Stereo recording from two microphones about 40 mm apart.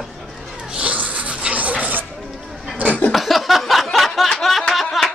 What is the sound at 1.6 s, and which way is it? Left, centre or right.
Music, right.